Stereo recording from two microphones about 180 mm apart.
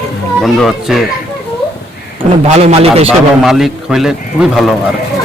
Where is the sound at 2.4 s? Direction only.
35° right (ahead or behind).